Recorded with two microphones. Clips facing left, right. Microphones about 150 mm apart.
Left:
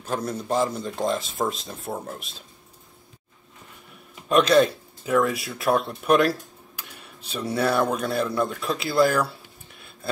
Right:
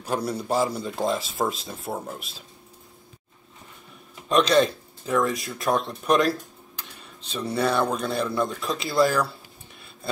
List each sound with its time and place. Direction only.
0.0 s speech: 10° right (ahead or behind)
4.1 s speech: 5° left (ahead or behind)